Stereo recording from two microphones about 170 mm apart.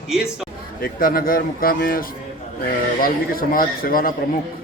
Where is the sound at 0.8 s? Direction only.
60° left (ahead or behind).